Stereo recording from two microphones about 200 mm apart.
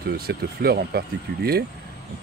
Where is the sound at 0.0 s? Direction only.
50° right (ahead or behind).